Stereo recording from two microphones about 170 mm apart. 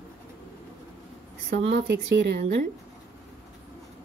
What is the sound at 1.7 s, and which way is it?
Speech, 80° right.